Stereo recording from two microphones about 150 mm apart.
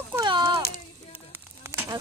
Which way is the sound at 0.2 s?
30° right (ahead or behind).